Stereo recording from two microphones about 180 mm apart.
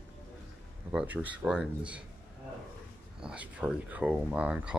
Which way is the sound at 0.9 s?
10° right (ahead or behind).